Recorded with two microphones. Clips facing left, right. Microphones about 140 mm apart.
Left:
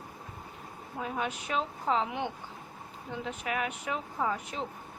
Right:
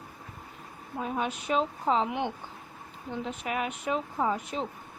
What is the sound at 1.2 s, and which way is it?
Speech, 20° right (ahead or behind).